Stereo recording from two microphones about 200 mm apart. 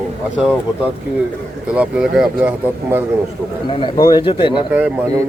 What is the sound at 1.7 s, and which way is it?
Speech, 5° right (ahead or behind).